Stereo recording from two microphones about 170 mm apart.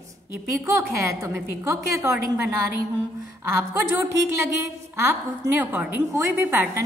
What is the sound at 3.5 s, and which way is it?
A woman's voice, 15° right (ahead or behind).